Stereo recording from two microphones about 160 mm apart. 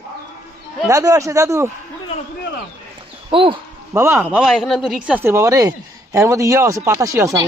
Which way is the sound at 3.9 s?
15° right (ahead or behind).